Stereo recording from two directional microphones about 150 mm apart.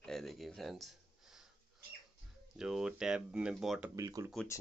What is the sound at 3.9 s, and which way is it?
Speech, 20° right (ahead or behind).